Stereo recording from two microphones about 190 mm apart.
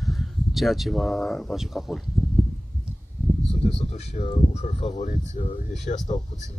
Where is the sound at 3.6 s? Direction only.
30° left (ahead or behind).